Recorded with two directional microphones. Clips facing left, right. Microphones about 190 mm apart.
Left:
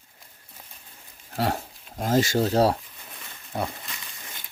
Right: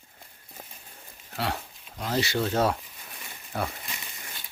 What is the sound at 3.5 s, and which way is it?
Speech, 20° left (ahead or behind).